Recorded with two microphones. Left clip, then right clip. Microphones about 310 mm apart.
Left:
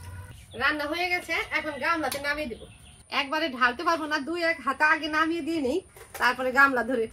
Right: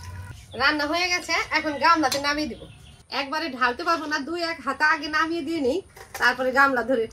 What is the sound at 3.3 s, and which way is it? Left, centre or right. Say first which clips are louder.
A woman's voice: right 1 dB; centre.